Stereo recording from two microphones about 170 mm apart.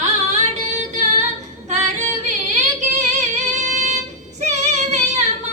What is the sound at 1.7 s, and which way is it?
Female singing, 45° right (ahead or behind).